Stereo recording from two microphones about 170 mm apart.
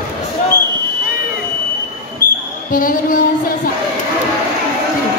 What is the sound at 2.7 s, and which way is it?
Music, 55° left (ahead or behind).